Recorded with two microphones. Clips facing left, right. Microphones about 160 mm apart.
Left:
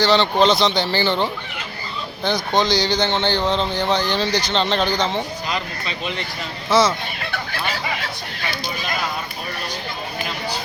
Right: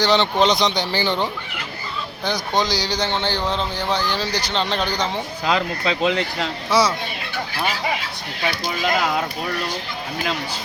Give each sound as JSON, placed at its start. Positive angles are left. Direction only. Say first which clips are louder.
{"t": 0.0, "sound": "speech", "louder": "left 1 dB", "side_deg": -20}
{"t": 5.5, "sound": "speech", "louder": "right 6 dB", "side_deg": -90}
{"t": 6.7, "sound": "speech", "louder": "left 2 dB", "side_deg": -10}
{"t": 8.4, "sound": "speech", "louder": "right 5 dB", "side_deg": -80}